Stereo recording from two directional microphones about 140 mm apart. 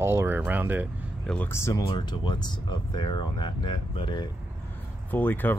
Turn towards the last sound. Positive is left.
turn(degrees=15)  # may be behind; listen again after turning